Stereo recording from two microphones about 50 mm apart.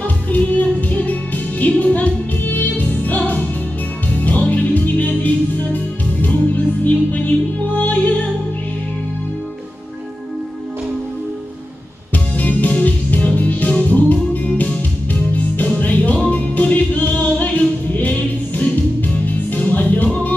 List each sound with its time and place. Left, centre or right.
0.0 s music: left
12.4 s music: left
18.6 s music: left